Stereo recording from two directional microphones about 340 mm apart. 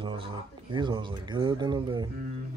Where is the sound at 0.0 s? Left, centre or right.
Centre.